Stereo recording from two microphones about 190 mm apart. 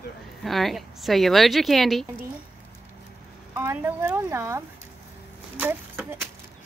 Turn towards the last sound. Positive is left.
turn(degrees=-10)  # may be behind; listen again after turning